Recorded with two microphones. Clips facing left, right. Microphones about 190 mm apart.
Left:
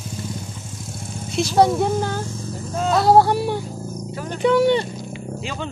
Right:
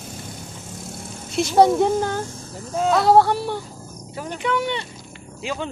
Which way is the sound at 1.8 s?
5° left (ahead or behind).